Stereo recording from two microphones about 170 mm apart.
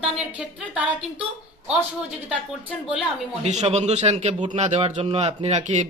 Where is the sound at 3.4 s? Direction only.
40° right (ahead or behind).